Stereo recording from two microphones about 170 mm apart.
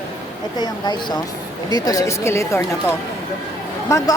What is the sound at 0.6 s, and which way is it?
A woman's voice, 25° left (ahead or behind).